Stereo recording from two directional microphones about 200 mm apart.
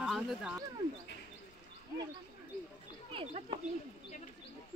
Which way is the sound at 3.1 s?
30° right (ahead or behind).